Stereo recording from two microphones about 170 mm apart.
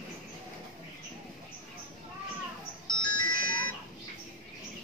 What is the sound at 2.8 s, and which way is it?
Music, 25° left (ahead or behind).